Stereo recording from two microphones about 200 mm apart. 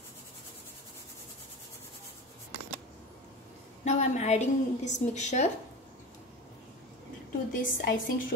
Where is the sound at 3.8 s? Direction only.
35° left (ahead or behind).